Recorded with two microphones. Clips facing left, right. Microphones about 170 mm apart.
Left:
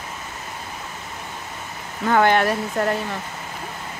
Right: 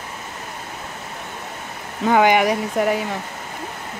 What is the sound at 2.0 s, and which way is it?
Speech, 15° right (ahead or behind).